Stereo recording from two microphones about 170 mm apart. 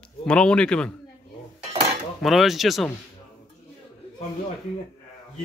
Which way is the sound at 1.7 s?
40° right (ahead or behind).